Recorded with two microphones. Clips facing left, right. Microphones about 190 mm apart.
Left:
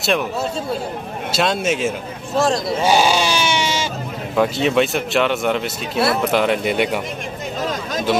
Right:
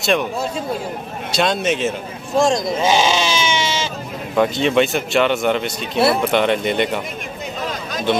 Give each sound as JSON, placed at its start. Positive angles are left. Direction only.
{"t": 0.0, "sound": "speech", "side_deg": 0}
{"t": 2.3, "sound": "speech", "side_deg": -15}
{"t": 2.8, "sound": "sheep", "side_deg": 10}
{"t": 4.4, "sound": "speech", "side_deg": 0}